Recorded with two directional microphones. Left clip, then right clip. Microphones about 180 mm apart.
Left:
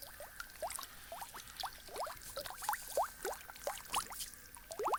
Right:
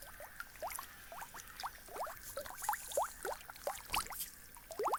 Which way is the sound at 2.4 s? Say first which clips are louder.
Left 1 dB; 20° left (ahead or behind).